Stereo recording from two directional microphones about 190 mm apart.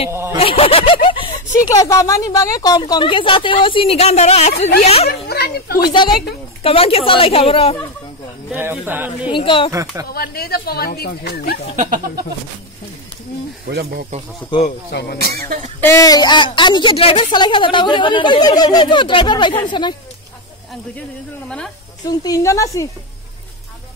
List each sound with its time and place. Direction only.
0.1 s speech: 15° right (ahead or behind)
0.4 s a woman's voice: 30° left (ahead or behind)
5.3 s a sound: 55° left (ahead or behind)
6.6 s a woman's voice: 30° left (ahead or behind)
8.5 s speech: 10° right (ahead or behind)
9.3 s a woman's voice: 25° left (ahead or behind)
9.7 s speech: 15° right (ahead or behind)
10.1 s speech: 55° left (ahead or behind)
11.7 s speech: 40° right (ahead or behind)
13.7 s speech: 55° right (ahead or behind)
14.9 s speech: 60° left (ahead or behind)
15.8 s a woman's voice: 15° left (ahead or behind)
21.5 s a woman's voice: 5° left (ahead or behind)
22.0 s a woman's voice: 20° left (ahead or behind)